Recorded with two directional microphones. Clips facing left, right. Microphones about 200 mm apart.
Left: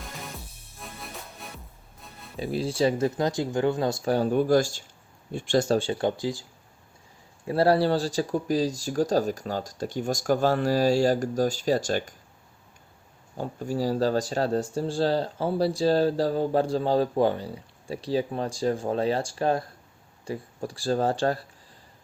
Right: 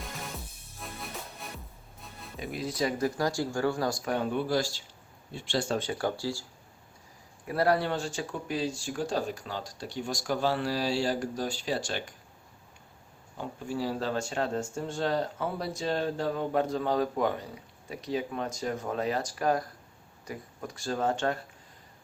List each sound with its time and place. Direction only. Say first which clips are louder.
0.0 s music: even; centre (ahead or behind)
2.4 s speech: left 7 dB; 30° left (ahead or behind)
7.4 s speech: left 5 dB; 30° left (ahead or behind)
13.3 s speech: left 5 dB; 40° left (ahead or behind)